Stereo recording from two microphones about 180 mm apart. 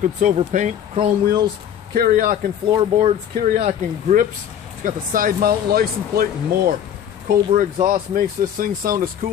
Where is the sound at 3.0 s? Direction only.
35° right (ahead or behind); by 6.7 s 55° right (ahead or behind).